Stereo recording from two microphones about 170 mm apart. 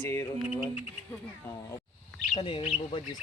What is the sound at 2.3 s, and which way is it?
Speech, 30° left (ahead or behind).